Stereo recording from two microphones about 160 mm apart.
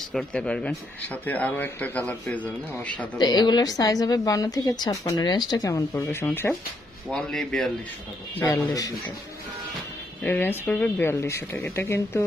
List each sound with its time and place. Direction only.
0.1 s speech: 5° left (ahead or behind)
3.2 s a woman's voice: 25° left (ahead or behind)
7.1 s speech: 5° left (ahead or behind)
8.4 s a woman's voice: 20° left (ahead or behind)
10.2 s speech: 15° left (ahead or behind)